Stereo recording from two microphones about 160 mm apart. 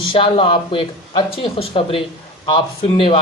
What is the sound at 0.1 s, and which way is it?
A man's voice, 30° left (ahead or behind).